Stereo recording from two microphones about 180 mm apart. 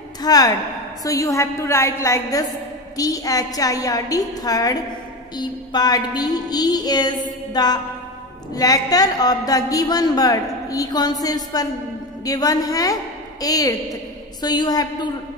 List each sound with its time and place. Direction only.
0.2 s a woman's voice: 20° left (ahead or behind)